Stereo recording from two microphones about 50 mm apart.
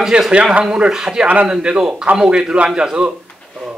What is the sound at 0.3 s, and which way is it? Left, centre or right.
Speech, right.